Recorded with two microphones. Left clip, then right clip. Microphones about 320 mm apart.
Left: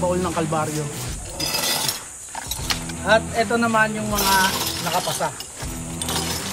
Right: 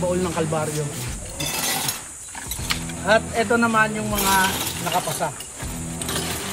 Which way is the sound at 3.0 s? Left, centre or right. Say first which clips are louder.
Left 1 dB; centre.